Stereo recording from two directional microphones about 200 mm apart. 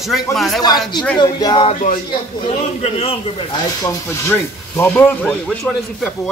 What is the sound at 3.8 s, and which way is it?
Speech, 10° left (ahead or behind).